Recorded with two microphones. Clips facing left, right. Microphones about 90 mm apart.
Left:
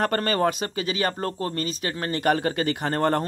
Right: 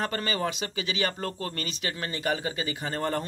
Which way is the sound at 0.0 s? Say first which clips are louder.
Left 7 dB; 50° left (ahead or behind).